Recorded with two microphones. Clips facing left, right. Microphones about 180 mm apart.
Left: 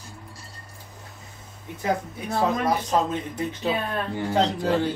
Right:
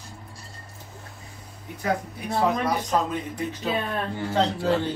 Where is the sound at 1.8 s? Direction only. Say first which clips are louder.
Left 1 dB; 25° left (ahead or behind).